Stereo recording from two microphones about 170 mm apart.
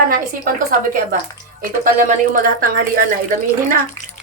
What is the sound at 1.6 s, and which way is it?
A woman's voice, 60° right (ahead or behind).